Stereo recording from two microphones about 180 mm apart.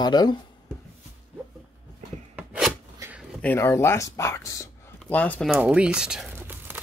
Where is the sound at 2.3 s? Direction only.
5° right (ahead or behind).